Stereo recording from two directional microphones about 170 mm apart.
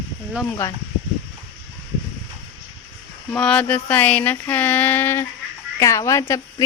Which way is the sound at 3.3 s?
5° left (ahead or behind).